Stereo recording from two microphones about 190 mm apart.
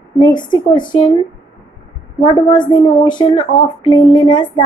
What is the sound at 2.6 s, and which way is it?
A woman's voice, 25° left (ahead or behind).